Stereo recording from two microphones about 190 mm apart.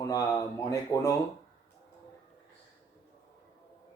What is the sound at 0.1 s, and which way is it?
Speech, 15° left (ahead or behind).